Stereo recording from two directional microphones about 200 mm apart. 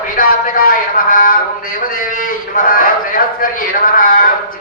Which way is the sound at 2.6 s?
45° left (ahead or behind).